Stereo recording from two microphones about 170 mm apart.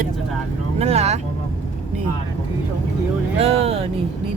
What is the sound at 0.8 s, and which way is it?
Vehicle, 40° right (ahead or behind).